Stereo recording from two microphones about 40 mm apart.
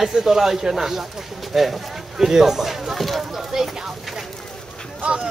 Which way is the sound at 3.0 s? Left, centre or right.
Centre.